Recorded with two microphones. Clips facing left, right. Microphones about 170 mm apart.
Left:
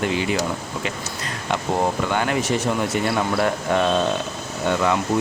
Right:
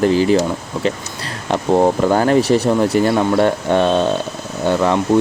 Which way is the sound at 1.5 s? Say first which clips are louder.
Right 8 dB; 35° right (ahead or behind).